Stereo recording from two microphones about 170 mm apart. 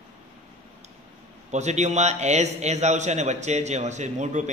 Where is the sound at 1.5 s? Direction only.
40° right (ahead or behind).